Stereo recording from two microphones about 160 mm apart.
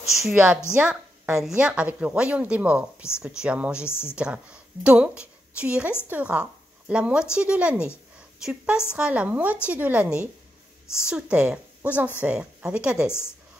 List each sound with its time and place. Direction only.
0.3 s a woman's voice: 5° right (ahead or behind)